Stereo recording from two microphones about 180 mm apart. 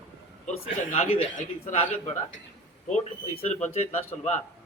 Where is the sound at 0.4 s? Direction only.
40° left (ahead or behind).